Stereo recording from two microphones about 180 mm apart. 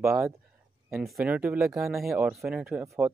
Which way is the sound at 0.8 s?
Centre (ahead or behind).